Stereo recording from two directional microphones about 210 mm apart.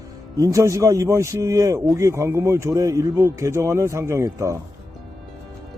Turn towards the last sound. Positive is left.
turn(degrees=-15)  # may be behind; listen again after turning